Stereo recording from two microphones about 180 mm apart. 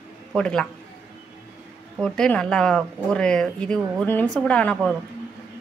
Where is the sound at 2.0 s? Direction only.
5° left (ahead or behind).